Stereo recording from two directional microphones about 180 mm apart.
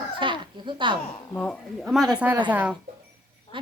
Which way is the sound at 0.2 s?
25° right (ahead or behind).